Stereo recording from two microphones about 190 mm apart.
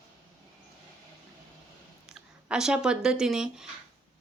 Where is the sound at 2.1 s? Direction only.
5° right (ahead or behind).